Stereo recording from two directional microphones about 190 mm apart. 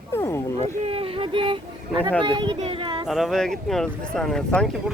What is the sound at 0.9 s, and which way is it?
Speech, 30° right (ahead or behind).